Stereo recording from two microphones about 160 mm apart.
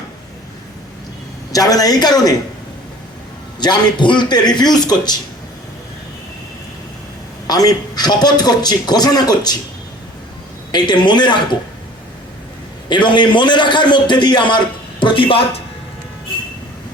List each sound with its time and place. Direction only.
1.5 s a man's voice: 20° left (ahead or behind)
3.6 s a man's voice: 25° left (ahead or behind)
7.4 s a man's voice: 25° left (ahead or behind)
10.7 s a man's voice: 25° left (ahead or behind)
12.9 s a man's voice: 30° left (ahead or behind)